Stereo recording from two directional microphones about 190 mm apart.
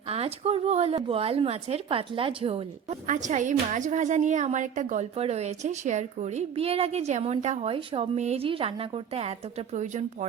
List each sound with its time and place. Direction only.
0.1 s a woman's voice: 30° right (ahead or behind)
3.1 s a woman's voice: 40° right (ahead or behind)